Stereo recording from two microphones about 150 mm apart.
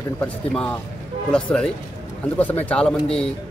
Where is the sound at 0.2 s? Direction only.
10° left (ahead or behind).